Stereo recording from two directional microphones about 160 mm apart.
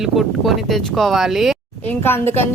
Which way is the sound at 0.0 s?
Centre (ahead or behind).